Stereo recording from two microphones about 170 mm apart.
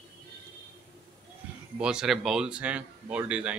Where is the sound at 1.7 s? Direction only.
5° right (ahead or behind).